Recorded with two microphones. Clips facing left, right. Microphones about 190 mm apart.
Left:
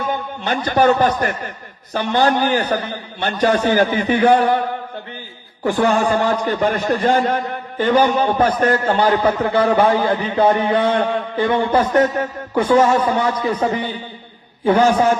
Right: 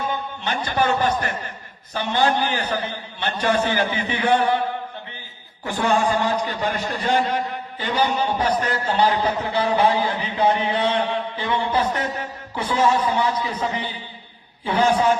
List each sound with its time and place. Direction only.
0.1 s a man's voice: 50° left (ahead or behind)
5.6 s a man's voice: 45° left (ahead or behind)